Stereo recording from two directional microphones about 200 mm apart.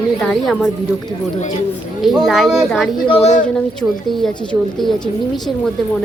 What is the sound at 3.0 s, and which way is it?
Speech, 30° left (ahead or behind).